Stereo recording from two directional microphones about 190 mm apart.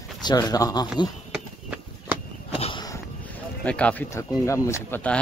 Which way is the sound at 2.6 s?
30° left (ahead or behind).